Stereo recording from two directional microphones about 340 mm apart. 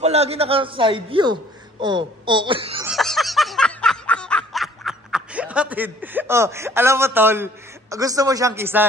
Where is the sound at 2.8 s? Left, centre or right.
Centre.